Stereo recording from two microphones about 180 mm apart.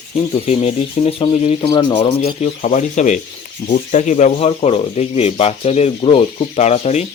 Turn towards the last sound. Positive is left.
turn(degrees=40)  # may be behind; listen again after turning